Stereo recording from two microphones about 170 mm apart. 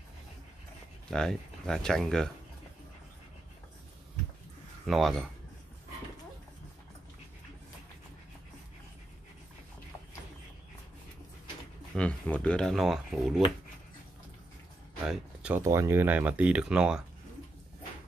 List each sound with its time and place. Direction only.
1.1 s speech: 5° left (ahead or behind)
4.8 s speech: centre (ahead or behind)
12.0 s speech: 5° left (ahead or behind)
15.0 s speech: 5° right (ahead or behind)